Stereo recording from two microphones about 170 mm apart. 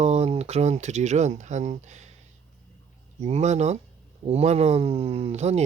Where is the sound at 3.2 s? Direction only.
40° right (ahead or behind).